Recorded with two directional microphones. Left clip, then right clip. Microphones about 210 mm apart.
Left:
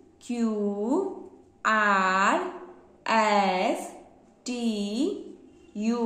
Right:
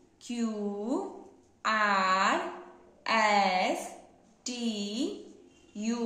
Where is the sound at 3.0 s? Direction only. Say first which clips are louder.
Left 3 dB; 15° left (ahead or behind).